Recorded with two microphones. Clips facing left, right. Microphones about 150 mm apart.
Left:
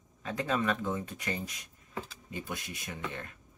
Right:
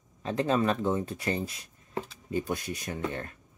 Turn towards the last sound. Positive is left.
turn(degrees=-45)  # may be behind; listen again after turning